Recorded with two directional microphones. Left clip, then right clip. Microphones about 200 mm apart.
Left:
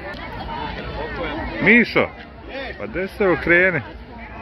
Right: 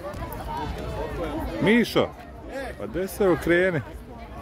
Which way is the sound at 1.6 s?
90° right.